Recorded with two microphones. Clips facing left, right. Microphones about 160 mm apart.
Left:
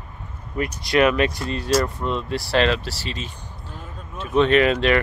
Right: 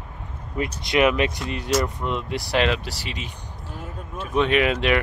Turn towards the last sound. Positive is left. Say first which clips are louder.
# left 3 dB
turn(degrees=-10)  # may be behind; listen again after turning